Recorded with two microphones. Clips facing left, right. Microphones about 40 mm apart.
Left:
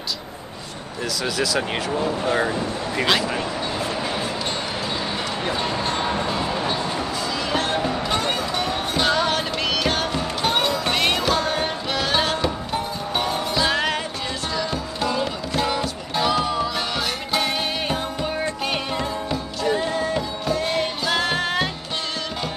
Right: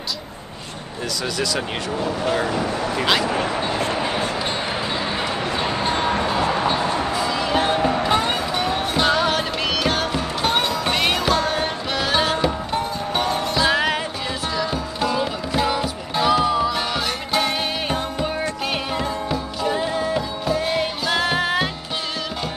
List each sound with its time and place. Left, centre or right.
1.2 s speech: centre
2.2 s speech: left
3.3 s speech: right
4.0 s music: centre
5.6 s a sound: centre
6.0 s music: right
6.4 s a sound: right
6.8 s music: right
7.2 s music: centre